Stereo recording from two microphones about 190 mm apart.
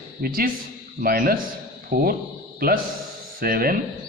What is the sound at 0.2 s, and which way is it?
A man's voice, 50° right (ahead or behind).